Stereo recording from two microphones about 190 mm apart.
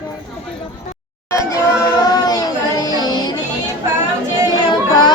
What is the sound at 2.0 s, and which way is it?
Music, 20° left (ahead or behind).